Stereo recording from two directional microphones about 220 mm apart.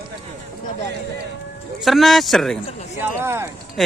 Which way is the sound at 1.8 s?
Centre (ahead or behind).